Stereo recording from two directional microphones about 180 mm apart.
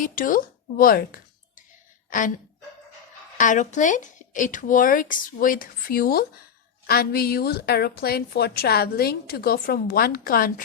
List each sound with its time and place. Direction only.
0.0 s speech: 50° left (ahead or behind)
3.3 s a woman's voice: 45° left (ahead or behind)